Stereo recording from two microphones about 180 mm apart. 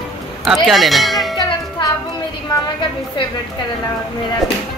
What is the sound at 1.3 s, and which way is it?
Music, 20° left (ahead or behind).